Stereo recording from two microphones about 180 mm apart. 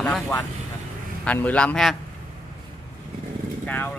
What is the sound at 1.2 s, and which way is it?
Speech, 10° left (ahead or behind).